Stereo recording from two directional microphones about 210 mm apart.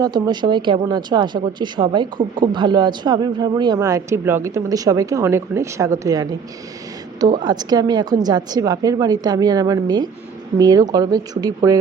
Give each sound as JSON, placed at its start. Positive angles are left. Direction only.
{"t": 0.0, "sound": "speech", "side_deg": -20}
{"t": 7.4, "sound": "speech", "side_deg": -20}